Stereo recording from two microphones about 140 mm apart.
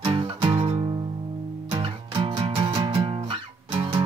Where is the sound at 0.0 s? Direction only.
35° right (ahead or behind).